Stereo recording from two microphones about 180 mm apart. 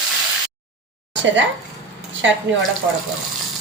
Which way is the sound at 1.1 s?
90° right.